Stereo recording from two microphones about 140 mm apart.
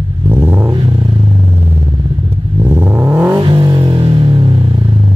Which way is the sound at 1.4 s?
15° right (ahead or behind).